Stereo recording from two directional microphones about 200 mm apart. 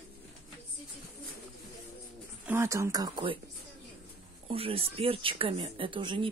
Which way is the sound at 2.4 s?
15° right (ahead or behind).